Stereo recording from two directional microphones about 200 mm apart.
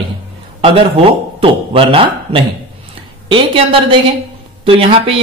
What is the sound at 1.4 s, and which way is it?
Speech, 25° right (ahead or behind).